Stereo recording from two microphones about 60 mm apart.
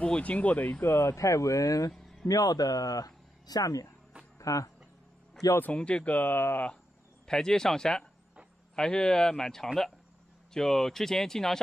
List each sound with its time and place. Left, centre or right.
0.0 s speech: left
0.8 s speech: left
2.0 s a sound: centre
2.2 s speech: left
4.4 s speech: left
5.8 s speech: centre; by 6.6 s left
7.2 s speech: centre